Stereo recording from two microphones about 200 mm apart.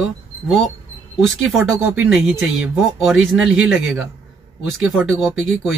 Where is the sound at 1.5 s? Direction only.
Centre (ahead or behind).